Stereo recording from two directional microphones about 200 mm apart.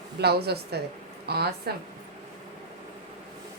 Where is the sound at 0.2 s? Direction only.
55° right (ahead or behind).